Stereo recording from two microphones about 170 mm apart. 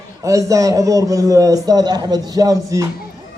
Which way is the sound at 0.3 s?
20° right (ahead or behind).